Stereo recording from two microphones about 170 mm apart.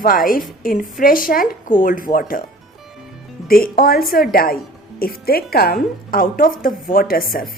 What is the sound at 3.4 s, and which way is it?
Speech, 60° left (ahead or behind).